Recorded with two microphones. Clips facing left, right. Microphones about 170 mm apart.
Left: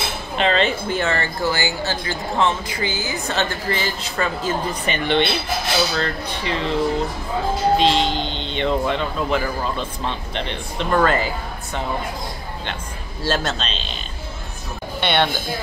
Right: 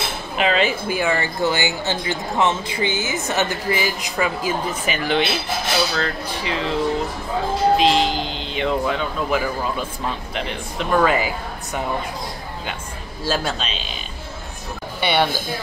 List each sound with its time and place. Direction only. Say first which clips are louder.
0.4 s a woman's voice: even; 5° right (ahead or behind)
13.2 s a woman's voice: left 1 dB; 10° right (ahead or behind)
15.0 s speech: even; 10° right (ahead or behind)